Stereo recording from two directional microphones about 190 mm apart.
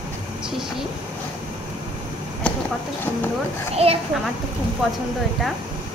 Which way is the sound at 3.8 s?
30° right (ahead or behind).